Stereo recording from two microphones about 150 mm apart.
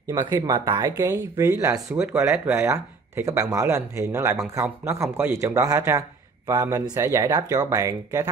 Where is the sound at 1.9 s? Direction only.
5° right (ahead or behind).